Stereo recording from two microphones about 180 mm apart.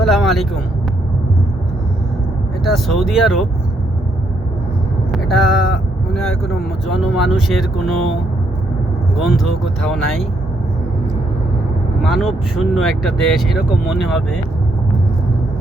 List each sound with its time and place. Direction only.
0.0 s vehicle: centre (ahead or behind)
2.6 s speech: centre (ahead or behind)
5.1 s speech: centre (ahead or behind)
9.1 s speech: centre (ahead or behind)
12.0 s speech: centre (ahead or behind)